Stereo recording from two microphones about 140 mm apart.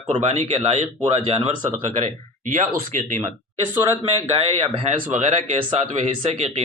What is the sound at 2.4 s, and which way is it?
Speech, 65° right (ahead or behind).